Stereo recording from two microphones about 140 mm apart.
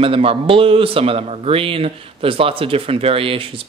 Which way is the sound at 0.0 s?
40° right (ahead or behind).